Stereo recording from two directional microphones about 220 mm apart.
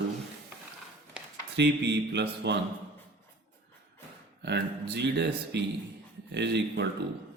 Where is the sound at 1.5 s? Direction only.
50° right (ahead or behind).